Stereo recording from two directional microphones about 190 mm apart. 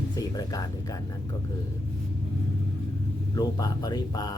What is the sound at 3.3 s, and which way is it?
Speech, 20° left (ahead or behind).